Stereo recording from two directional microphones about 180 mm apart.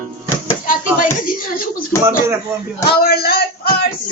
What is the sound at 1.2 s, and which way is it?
Speech, 50° left (ahead or behind).